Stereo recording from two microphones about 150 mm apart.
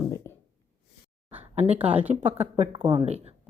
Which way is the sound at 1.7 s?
40° right (ahead or behind).